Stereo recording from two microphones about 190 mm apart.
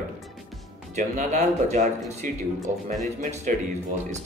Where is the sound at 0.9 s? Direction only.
35° right (ahead or behind).